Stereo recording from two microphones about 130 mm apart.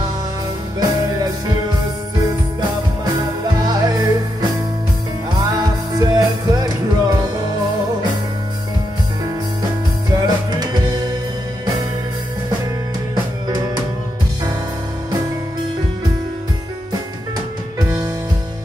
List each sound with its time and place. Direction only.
0.7 s music: 30° right (ahead or behind)
3.6 s music: 30° right (ahead or behind)
5.9 s music: 30° right (ahead or behind)
10.1 s music: 30° right (ahead or behind)
13.1 s music: 30° right (ahead or behind)